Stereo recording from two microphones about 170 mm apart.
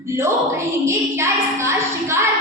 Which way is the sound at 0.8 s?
15° right (ahead or behind).